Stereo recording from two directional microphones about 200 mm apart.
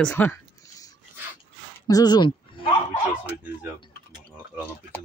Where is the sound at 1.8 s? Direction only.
20° left (ahead or behind).